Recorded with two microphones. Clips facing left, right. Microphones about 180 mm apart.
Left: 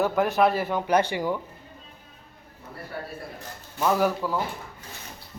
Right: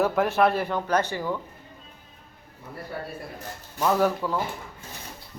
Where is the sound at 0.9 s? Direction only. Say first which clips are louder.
Left 5 dB; 15° left (ahead or behind).